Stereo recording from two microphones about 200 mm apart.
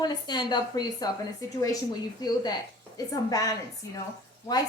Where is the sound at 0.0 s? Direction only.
20° left (ahead or behind).